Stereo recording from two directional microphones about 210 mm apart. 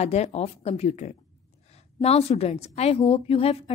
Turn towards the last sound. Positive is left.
turn(degrees=30)  # may be behind; listen again after turning